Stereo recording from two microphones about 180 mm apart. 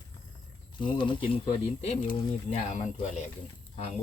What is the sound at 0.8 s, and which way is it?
Speech, 25° left (ahead or behind).